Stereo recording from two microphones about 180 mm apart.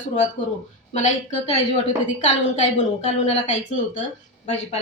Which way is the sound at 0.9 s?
40° left (ahead or behind).